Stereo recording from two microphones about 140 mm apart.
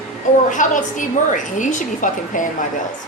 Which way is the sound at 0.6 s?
65° left (ahead or behind).